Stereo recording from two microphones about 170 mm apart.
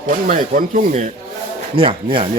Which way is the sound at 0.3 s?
50° right (ahead or behind).